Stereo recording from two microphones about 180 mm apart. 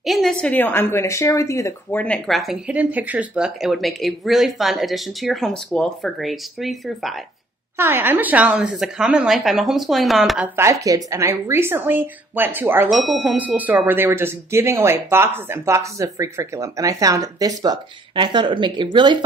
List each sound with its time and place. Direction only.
0.0 s a woman's voice: centre (ahead or behind)
7.7 s speech: 10° right (ahead or behind)
12.9 s speech: centre (ahead or behind); by 19.1 s 25° right (ahead or behind)